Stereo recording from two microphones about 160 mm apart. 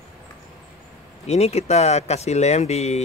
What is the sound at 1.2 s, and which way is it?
Speech, 40° left (ahead or behind).